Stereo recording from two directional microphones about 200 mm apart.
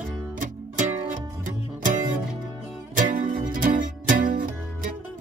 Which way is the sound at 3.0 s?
40° right (ahead or behind).